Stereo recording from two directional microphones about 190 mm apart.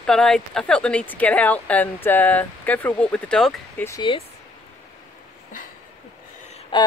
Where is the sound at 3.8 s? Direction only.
20° left (ahead or behind).